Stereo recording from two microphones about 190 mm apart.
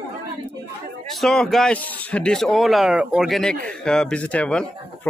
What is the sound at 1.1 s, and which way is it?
Speech, centre (ahead or behind).